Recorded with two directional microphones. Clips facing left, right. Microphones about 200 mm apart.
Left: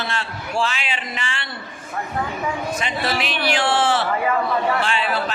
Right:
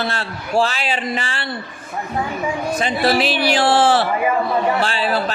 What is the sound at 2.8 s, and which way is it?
A man's voice, 35° right (ahead or behind).